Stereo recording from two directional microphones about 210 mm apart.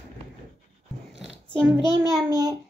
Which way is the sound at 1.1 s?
Centre (ahead or behind).